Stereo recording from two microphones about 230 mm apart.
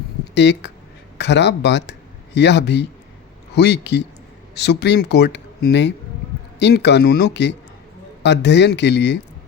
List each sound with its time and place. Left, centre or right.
0.3 s speech: left